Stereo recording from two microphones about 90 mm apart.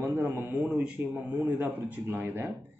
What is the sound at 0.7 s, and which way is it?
A man's voice, 15° right (ahead or behind).